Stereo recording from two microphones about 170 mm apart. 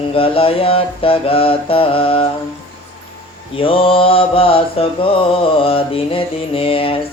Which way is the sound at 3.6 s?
30° left (ahead or behind).